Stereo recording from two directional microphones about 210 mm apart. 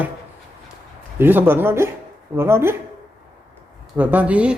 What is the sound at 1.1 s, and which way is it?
A man's voice, 10° right (ahead or behind).